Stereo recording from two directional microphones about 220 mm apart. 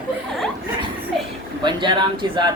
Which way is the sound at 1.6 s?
20° right (ahead or behind).